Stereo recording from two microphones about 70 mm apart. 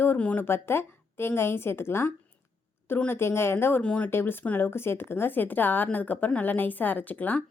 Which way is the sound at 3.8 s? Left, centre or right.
Centre.